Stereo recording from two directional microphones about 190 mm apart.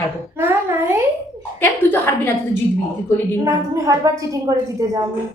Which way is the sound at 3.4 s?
15° right (ahead or behind).